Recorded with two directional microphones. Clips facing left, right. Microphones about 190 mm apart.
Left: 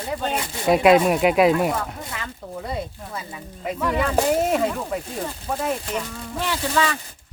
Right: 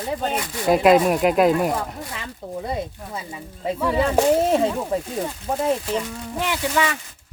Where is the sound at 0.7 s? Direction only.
Centre (ahead or behind).